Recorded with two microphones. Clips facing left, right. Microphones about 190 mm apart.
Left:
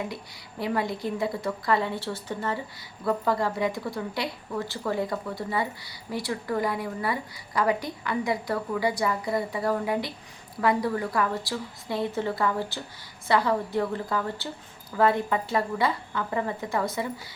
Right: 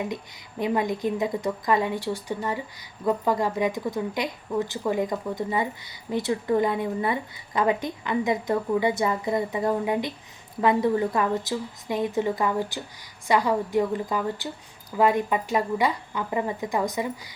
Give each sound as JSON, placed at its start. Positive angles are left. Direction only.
{"t": 0.6, "sound": "a woman's voice", "side_deg": -20}